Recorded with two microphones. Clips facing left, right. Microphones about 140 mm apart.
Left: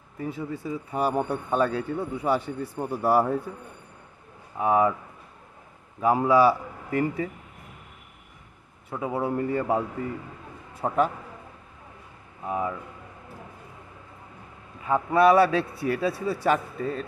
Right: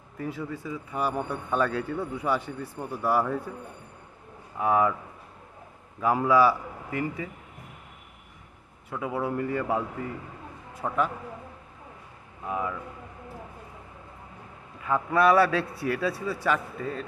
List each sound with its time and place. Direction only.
0.2 s a man's voice: 25° left (ahead or behind)
4.6 s a man's voice: 25° left (ahead or behind)
5.9 s a man's voice: 25° left (ahead or behind)
6.9 s a man's voice: 40° left (ahead or behind)
8.9 s a man's voice: 25° left (ahead or behind)
12.4 s a man's voice: 25° left (ahead or behind)
14.9 s a man's voice: 25° left (ahead or behind)